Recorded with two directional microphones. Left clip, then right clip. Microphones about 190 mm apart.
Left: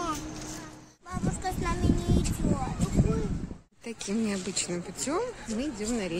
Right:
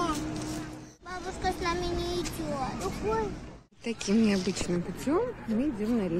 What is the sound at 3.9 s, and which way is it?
Speech, 10° left (ahead or behind).